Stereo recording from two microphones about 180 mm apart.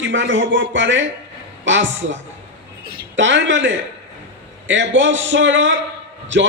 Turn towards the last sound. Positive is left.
turn(degrees=-90)